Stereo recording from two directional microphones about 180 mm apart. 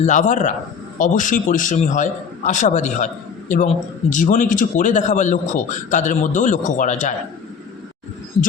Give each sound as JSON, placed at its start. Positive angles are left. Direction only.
{"t": 0.0, "sound": "a man's voice", "side_deg": 45}
{"t": 4.1, "sound": "a man's voice", "side_deg": 45}